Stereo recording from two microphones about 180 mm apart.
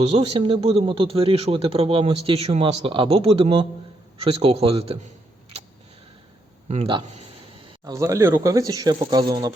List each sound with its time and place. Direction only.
0.0 s a man's voice: 35° right (ahead or behind)
6.7 s a man's voice: 30° right (ahead or behind)
7.9 s speech: 15° right (ahead or behind)